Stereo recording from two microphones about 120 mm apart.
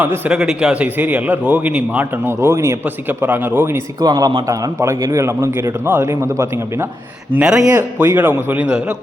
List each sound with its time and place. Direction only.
0.0 s a man's voice: 10° right (ahead or behind)
4.0 s a man's voice: 30° right (ahead or behind)
7.3 s a man's voice: 5° right (ahead or behind)